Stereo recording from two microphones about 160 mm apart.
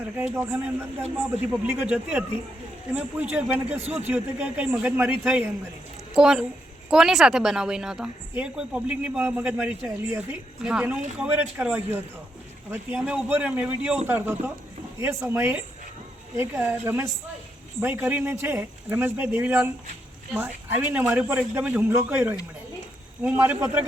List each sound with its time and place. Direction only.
0.2 s a man's voice: 10° right (ahead or behind)
3.7 s a man's voice: 40° right (ahead or behind)
3.9 s a man's voice: 10° right (ahead or behind)